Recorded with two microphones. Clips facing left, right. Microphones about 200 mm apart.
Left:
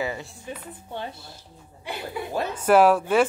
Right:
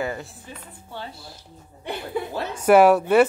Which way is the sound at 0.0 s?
Centre (ahead or behind).